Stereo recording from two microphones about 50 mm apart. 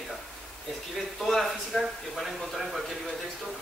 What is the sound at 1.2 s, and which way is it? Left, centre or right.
Speech, centre.